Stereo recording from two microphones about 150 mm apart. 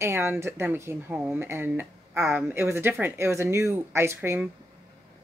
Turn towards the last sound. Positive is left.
turn(degrees=-15)  # may be behind; listen again after turning